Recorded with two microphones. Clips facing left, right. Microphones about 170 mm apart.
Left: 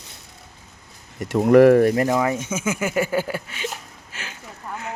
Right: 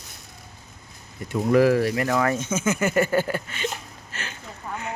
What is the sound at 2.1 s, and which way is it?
Speech, 15° left (ahead or behind).